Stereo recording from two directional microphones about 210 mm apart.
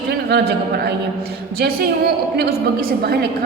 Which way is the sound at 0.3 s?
50° right (ahead or behind).